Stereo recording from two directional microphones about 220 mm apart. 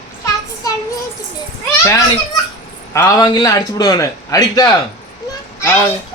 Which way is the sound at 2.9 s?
15° left (ahead or behind).